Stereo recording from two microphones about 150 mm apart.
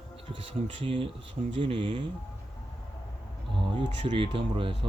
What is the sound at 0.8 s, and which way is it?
Speech, 35° right (ahead or behind).